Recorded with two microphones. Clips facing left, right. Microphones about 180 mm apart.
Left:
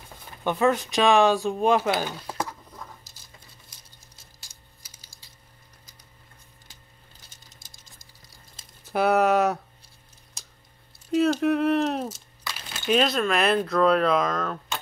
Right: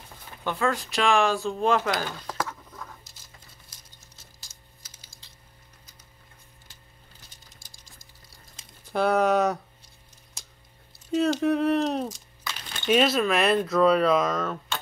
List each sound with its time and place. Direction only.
0.4 s speech: 20° left (ahead or behind)
2.0 s stir: 15° left (ahead or behind)
8.9 s speech: 5° left (ahead or behind)
11.1 s speech: centre (ahead or behind)